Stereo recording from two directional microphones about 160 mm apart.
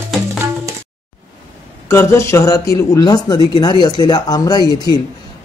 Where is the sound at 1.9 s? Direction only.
15° left (ahead or behind).